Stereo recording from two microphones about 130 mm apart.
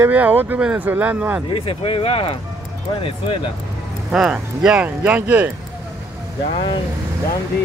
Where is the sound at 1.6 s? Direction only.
45° left (ahead or behind).